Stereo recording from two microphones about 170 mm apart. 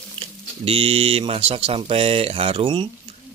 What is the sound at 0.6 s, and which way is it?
Speech, 35° right (ahead or behind).